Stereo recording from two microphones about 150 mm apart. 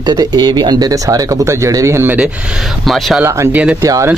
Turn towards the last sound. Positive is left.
turn(degrees=-20)  # may be behind; listen again after turning